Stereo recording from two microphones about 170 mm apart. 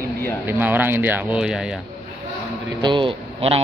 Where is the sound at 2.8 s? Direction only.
30° right (ahead or behind).